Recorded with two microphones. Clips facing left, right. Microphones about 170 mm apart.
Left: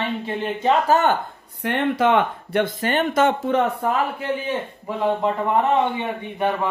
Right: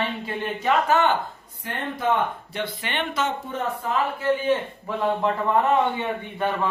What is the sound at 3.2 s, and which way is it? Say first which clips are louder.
Speech: left 8 dB; 70° left (ahead or behind).